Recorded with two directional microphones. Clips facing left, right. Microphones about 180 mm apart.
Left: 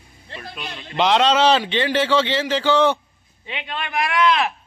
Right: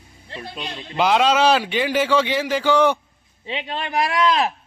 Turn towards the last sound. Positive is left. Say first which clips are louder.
# even
turn(degrees=-35)  # may be behind; listen again after turning